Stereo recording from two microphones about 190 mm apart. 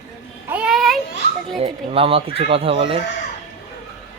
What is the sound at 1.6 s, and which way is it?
Speech, 30° right (ahead or behind).